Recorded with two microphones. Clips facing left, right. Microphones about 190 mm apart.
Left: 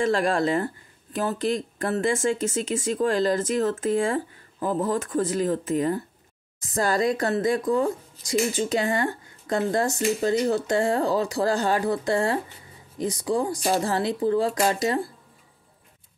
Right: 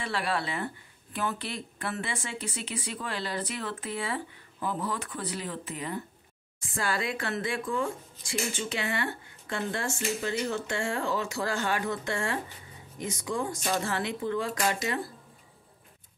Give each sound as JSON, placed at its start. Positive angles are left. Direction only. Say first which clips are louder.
{"t": 0.0, "sound": "speech", "louder": "left 9 dB", "side_deg": 45}